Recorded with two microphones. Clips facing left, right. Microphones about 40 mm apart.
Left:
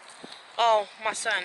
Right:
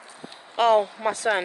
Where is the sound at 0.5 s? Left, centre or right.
Left.